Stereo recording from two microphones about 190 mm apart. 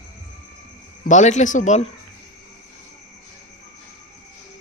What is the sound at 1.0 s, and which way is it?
Speech, 40° left (ahead or behind).